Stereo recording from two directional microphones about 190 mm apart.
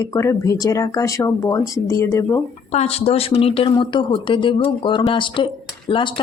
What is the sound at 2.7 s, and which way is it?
Speech, 30° left (ahead or behind).